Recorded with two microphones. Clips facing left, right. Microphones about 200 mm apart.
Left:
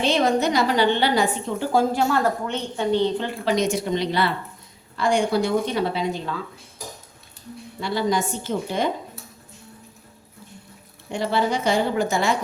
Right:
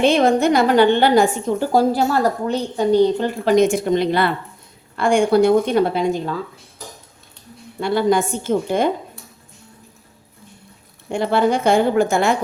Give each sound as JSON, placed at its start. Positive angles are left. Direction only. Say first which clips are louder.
{"t": 0.0, "sound": "a woman's voice", "louder": "right 5 dB", "side_deg": -55}
{"t": 7.8, "sound": "a woman's voice", "louder": "right 6 dB", "side_deg": -55}
{"t": 11.1, "sound": "a woman's voice", "louder": "right 5 dB", "side_deg": -55}